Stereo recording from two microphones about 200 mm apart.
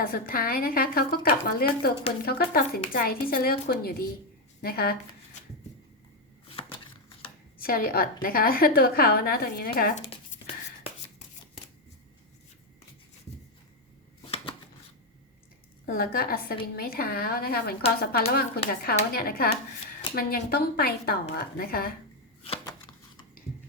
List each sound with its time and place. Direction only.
0.0 s a woman's voice: 45° left (ahead or behind)
6.5 s a sound: 30° left (ahead or behind)
7.6 s a woman's voice: 45° left (ahead or behind)
14.3 s shuffling cards: 30° left (ahead or behind)
15.9 s a woman's voice: 50° left (ahead or behind)